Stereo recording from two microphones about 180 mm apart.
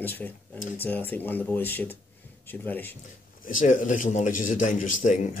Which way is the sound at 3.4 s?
45° left (ahead or behind).